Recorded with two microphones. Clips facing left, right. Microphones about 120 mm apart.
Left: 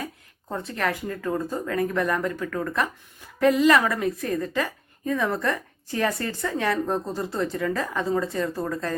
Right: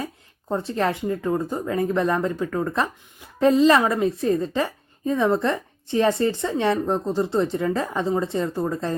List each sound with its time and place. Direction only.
0.0 s a woman's voice: 30° right (ahead or behind)